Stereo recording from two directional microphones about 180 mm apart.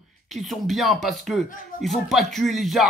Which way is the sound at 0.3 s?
Centre (ahead or behind).